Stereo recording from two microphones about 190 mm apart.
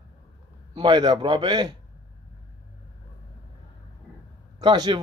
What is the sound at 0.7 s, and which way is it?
A man's voice, 25° right (ahead or behind).